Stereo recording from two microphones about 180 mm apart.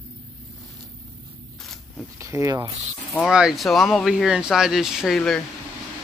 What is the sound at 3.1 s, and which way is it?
Speech, centre (ahead or behind).